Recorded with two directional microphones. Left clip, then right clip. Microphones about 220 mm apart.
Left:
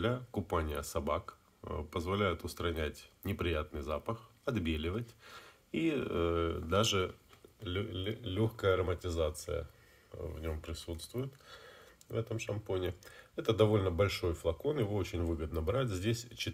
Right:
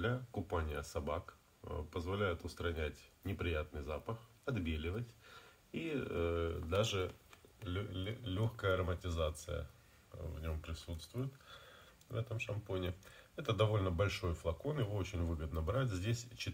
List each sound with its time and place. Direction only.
0.0 s speech: 45° left (ahead or behind)